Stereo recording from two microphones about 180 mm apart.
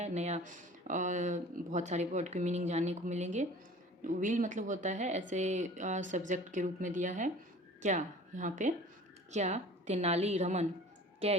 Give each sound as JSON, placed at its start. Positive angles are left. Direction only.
{"t": 0.0, "sound": "a woman's voice", "side_deg": -40}